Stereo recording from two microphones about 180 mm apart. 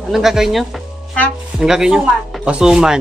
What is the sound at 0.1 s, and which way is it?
A man's voice, centre (ahead or behind).